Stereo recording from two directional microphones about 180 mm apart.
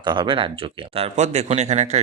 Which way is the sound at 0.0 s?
25° right (ahead or behind).